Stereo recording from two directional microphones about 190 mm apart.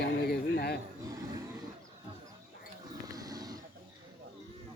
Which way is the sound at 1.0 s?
20° right (ahead or behind).